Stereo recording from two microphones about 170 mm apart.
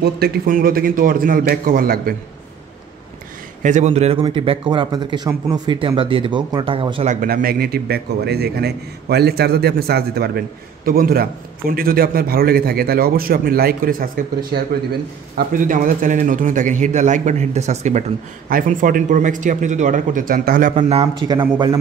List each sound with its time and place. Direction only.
0.0 s a man's voice: 60° right (ahead or behind)
3.6 s a man's voice: 45° right (ahead or behind)
7.1 s a man's voice: 55° right (ahead or behind)
18.5 s a man's voice: 55° right (ahead or behind)
20.9 s a man's voice: 30° right (ahead or behind)